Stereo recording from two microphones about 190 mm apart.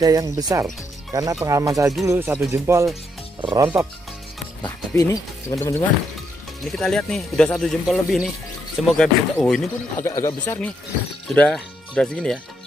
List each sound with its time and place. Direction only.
0.0 s speech: 20° right (ahead or behind)
4.6 s speech: 15° left (ahead or behind)
6.7 s speech: centre (ahead or behind)
10.0 s speech: 15° left (ahead or behind)